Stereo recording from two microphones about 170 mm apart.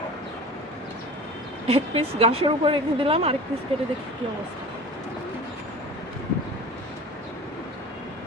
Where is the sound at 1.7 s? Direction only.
35° right (ahead or behind).